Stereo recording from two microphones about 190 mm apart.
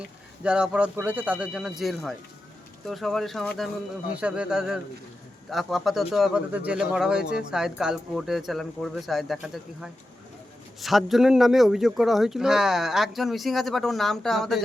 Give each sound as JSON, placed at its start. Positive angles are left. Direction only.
{"t": 0.4, "sound": "speech", "side_deg": -5}